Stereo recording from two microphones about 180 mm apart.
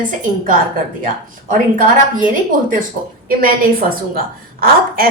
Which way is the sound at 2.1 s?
50° right (ahead or behind).